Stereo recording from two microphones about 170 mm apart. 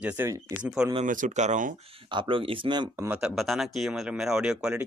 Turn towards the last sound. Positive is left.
turn(degrees=-5)  # may be behind; listen again after turning